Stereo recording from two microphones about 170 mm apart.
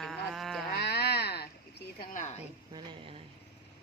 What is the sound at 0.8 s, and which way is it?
Speech, 75° left (ahead or behind).